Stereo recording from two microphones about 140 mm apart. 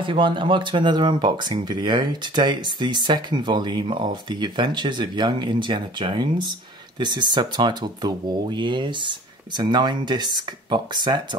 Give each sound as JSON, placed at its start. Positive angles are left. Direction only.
{"t": 0.0, "sound": "speech", "side_deg": -35}